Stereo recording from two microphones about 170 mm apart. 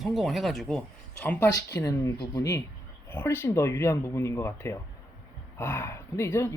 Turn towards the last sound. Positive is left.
turn(degrees=15)  # may be behind; listen again after turning